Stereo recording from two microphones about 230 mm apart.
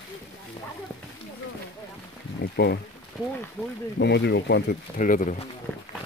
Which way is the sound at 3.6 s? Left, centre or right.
Centre.